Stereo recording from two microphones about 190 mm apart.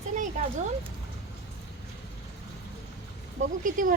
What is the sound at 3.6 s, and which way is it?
Speech, 45° right (ahead or behind).